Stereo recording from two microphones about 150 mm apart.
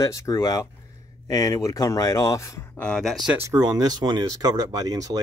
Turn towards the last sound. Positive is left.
turn(degrees=-25)  # may be behind; listen again after turning